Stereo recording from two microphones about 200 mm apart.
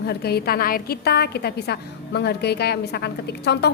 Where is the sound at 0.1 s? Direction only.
55° left (ahead or behind).